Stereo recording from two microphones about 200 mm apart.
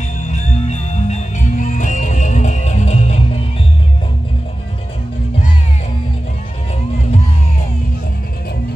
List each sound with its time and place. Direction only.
0.3 s music: 35° left (ahead or behind)